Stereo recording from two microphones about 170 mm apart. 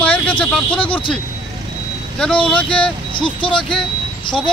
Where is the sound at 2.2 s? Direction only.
5° left (ahead or behind).